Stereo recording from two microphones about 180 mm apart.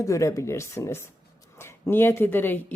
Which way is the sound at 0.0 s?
15° left (ahead or behind).